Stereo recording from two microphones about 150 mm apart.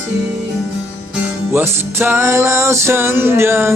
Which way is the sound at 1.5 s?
15° right (ahead or behind).